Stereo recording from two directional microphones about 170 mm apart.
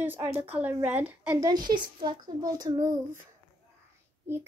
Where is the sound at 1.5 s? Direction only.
25° right (ahead or behind).